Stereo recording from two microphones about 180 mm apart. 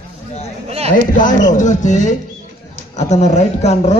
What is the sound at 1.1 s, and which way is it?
Speech, 45° left (ahead or behind).